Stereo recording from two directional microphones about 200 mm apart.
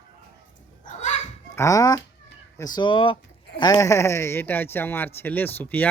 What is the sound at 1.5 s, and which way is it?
Speech, 15° left (ahead or behind).